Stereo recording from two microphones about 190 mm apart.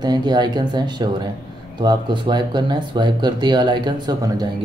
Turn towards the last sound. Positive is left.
turn(degrees=-20)  # may be behind; listen again after turning